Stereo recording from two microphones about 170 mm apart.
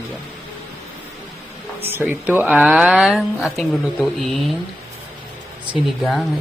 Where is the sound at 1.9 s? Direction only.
10° right (ahead or behind).